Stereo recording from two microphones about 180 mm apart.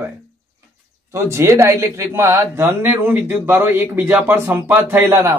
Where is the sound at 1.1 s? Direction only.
15° right (ahead or behind).